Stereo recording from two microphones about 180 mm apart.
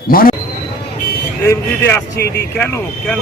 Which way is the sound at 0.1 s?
55° left (ahead or behind).